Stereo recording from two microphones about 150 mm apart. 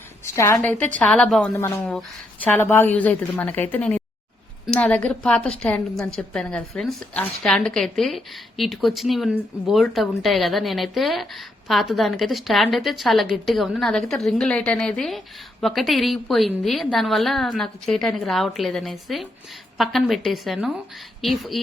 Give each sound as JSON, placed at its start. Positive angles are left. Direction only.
{"t": 0.3, "sound": "a woman's voice", "side_deg": 20}
{"t": 1.5, "sound": "a woman's voice", "side_deg": 15}
{"t": 2.0, "sound": "a woman's voice", "side_deg": 5}